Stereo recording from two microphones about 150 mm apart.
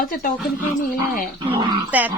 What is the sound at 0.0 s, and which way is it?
Speech, 70° left (ahead or behind).